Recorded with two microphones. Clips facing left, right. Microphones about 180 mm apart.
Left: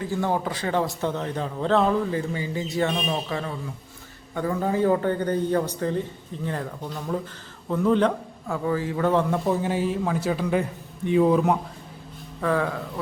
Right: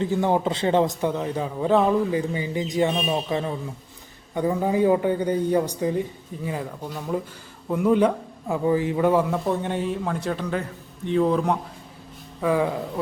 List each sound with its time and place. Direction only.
0.0 s a man's voice: 20° right (ahead or behind); by 11.6 s 5° left (ahead or behind)
12.4 s a man's voice: 10° right (ahead or behind)